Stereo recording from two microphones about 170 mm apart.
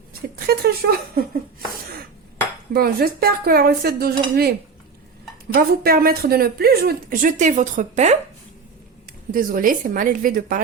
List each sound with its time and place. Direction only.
0.1 s speech: 65° right (ahead or behind)
2.7 s speech: 60° right (ahead or behind)
5.5 s speech: 65° right (ahead or behind); by 8.2 s 45° right (ahead or behind)
9.3 s a woman's voice: 55° right (ahead or behind)